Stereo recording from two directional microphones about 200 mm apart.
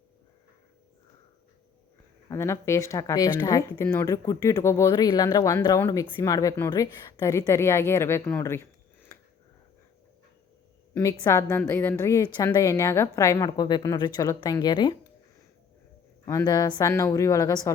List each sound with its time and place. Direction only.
2.3 s a woman's voice: 15° left (ahead or behind)
10.9 s a woman's voice: 15° left (ahead or behind)
16.2 s a woman's voice: 15° left (ahead or behind)